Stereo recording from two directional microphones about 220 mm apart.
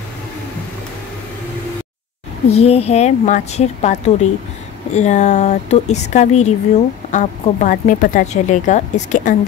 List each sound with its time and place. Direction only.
2.5 s a woman's voice: 30° left (ahead or behind)